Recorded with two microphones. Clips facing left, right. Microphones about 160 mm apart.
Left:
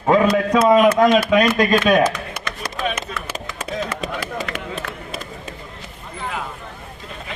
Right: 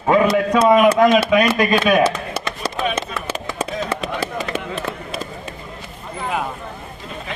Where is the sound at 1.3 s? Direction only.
5° right (ahead or behind).